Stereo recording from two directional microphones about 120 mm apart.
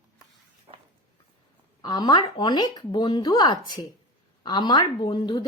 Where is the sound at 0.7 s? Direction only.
55° right (ahead or behind).